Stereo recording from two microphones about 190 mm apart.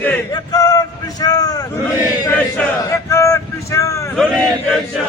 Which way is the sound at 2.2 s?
10° left (ahead or behind).